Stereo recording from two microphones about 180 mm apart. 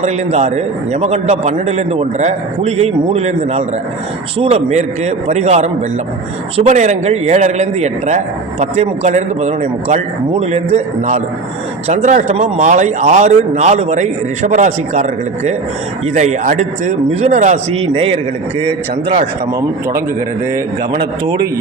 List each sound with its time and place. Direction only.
0.0 s a man's voice: 35° right (ahead or behind)
16.1 s a man's voice: 40° right (ahead or behind)
20.9 s speech: 25° right (ahead or behind)